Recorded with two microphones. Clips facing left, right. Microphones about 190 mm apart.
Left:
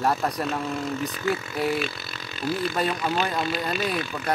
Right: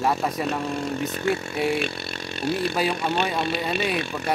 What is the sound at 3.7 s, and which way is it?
Speech, 65° right (ahead or behind).